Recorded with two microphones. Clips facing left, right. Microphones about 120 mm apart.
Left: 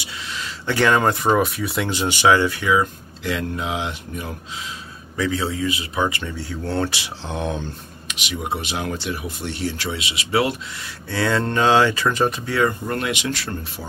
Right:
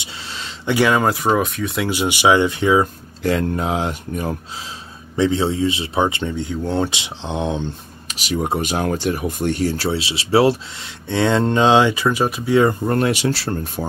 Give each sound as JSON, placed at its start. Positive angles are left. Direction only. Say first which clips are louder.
{"t": 0.0, "sound": "a sound", "louder": "left 1 dB", "side_deg": -30}
{"t": 0.7, "sound": "speech", "louder": "right 2 dB", "side_deg": -10}
{"t": 1.9, "sound": "speech", "louder": "right 1 dB", "side_deg": -15}
{"t": 3.3, "sound": "speech", "louder": "right 6 dB", "side_deg": -45}
{"t": 5.1, "sound": "speech", "louder": "right 5 dB", "side_deg": -25}
{"t": 8.1, "sound": "speech", "louder": "right 5 dB", "side_deg": -40}
{"t": 12.5, "sound": "speech", "louder": "right 8 dB", "side_deg": -30}